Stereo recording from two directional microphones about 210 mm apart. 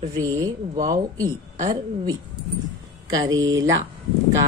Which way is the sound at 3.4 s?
15° right (ahead or behind).